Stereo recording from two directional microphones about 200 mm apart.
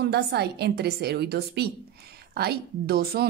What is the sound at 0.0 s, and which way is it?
A woman's voice, 55° right (ahead or behind).